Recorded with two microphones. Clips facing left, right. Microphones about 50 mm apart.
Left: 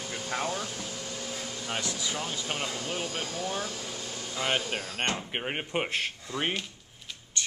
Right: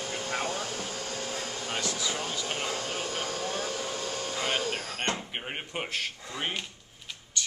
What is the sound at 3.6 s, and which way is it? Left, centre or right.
Vacuum cleaner, right.